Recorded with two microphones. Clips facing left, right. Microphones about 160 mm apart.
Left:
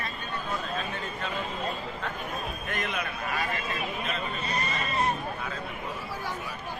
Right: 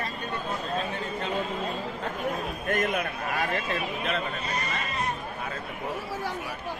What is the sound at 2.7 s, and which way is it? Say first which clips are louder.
Speech: right 8 dB; 45° right (ahead or behind).